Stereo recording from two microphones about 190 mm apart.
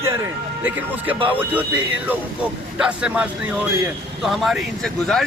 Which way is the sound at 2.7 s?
5° right (ahead or behind).